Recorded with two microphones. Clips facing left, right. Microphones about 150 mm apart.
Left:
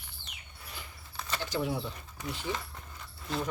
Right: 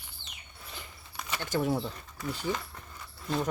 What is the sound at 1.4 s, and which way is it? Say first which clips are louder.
Keys jangling: right 4 dB; 50° right (ahead or behind).